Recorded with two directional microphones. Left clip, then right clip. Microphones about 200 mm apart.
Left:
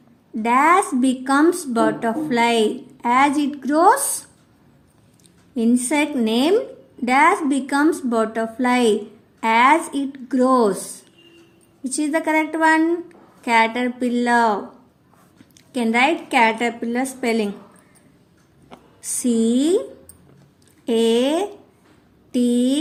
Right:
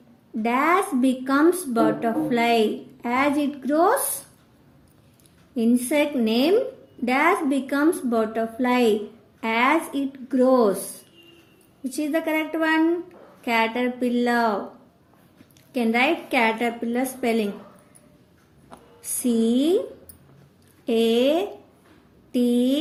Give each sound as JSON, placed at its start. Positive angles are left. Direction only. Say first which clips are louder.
{"t": 0.4, "sound": "a woman's voice", "louder": "left 5 dB", "side_deg": 25}
{"t": 5.5, "sound": "a woman's voice", "louder": "left 2 dB", "side_deg": 25}
{"t": 15.7, "sound": "a woman's voice", "louder": "left 3 dB", "side_deg": 25}
{"t": 19.0, "sound": "a woman's voice", "louder": "left 3 dB", "side_deg": 25}
{"t": 20.8, "sound": "a woman's voice", "louder": "left 2 dB", "side_deg": 25}